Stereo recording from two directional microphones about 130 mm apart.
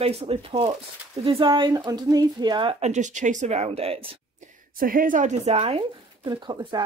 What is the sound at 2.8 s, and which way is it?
Speech, 65° right (ahead or behind).